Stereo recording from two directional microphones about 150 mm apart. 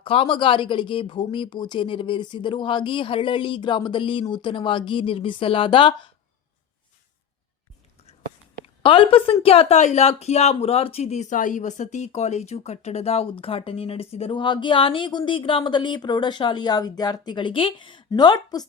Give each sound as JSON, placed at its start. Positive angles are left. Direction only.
{"t": 0.0, "sound": "speech", "side_deg": 35}
{"t": 8.8, "sound": "speech", "side_deg": 35}